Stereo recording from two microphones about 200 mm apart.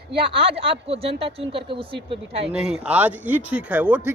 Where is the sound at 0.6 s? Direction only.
30° right (ahead or behind).